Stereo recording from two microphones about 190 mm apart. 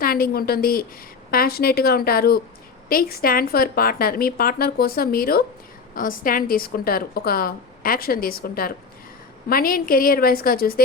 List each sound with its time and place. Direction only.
0.0 s a woman's voice: 50° left (ahead or behind)